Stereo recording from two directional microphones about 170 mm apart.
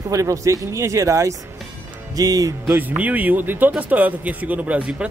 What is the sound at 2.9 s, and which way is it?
Speech, 10° right (ahead or behind).